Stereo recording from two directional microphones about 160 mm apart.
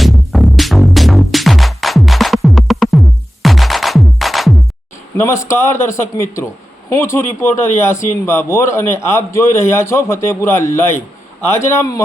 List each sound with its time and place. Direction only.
0.0 s music: centre (ahead or behind)
5.1 s a man's voice: 15° left (ahead or behind)